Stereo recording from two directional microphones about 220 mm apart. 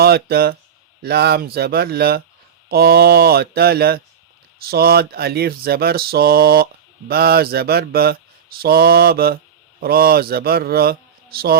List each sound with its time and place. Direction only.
0.0 s speech: 45° right (ahead or behind)